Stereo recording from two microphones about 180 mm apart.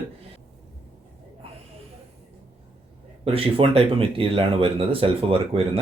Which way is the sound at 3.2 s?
30° right (ahead or behind).